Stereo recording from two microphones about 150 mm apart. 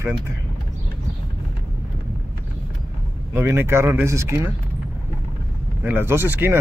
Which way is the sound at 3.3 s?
15° right (ahead or behind).